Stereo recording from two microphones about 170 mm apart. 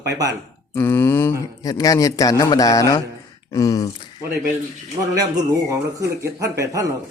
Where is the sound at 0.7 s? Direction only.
15° left (ahead or behind).